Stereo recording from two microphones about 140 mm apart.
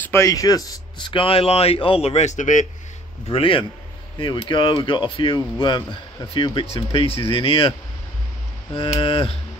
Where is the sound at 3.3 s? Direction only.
40° left (ahead or behind).